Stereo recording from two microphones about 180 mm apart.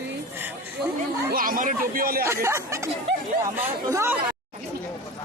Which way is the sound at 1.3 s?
50° right (ahead or behind).